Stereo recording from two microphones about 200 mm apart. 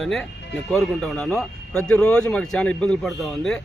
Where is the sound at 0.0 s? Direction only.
Centre (ahead or behind).